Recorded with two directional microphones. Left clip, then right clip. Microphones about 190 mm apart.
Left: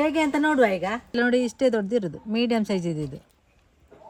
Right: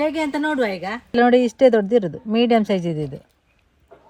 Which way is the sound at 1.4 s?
35° right (ahead or behind).